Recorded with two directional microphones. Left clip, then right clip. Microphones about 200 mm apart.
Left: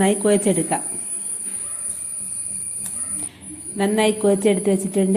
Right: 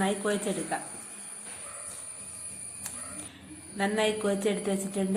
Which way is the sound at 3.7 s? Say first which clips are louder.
Left 8 dB; 25° left (ahead or behind).